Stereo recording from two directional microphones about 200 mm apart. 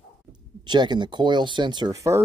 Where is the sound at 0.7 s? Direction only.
20° right (ahead or behind).